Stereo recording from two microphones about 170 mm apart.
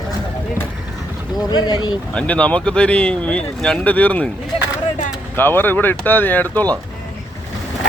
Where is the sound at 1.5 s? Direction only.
25° left (ahead or behind).